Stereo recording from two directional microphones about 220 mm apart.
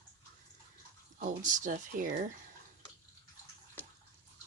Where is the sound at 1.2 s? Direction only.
35° right (ahead or behind).